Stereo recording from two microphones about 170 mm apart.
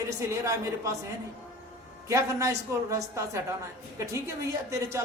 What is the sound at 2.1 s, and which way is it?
Speech, 20° right (ahead or behind).